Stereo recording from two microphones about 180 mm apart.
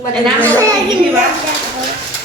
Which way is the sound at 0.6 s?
25° right (ahead or behind).